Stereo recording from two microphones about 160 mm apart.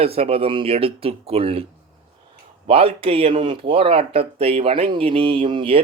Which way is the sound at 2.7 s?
35° right (ahead or behind).